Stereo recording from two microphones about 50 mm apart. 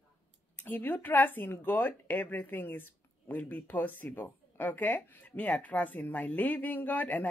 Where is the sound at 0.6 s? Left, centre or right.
Left.